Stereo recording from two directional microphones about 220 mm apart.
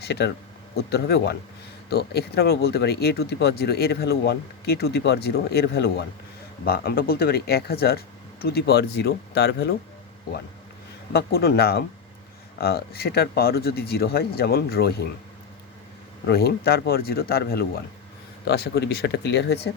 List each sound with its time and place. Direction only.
0.0 s speech: 50° left (ahead or behind)
11.1 s speech: 45° left (ahead or behind)
16.2 s speech: 45° left (ahead or behind)